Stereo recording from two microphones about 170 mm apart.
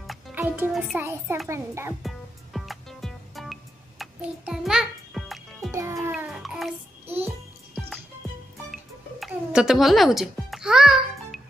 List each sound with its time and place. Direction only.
0.0 s music: centre (ahead or behind)
0.4 s a child's voice: 10° right (ahead or behind)
2.0 s music: centre (ahead or behind)
5.7 s music: 15° right (ahead or behind)
6.1 s music: centre (ahead or behind)
7.1 s music: 10° right (ahead or behind)
9.2 s music: 5° right (ahead or behind)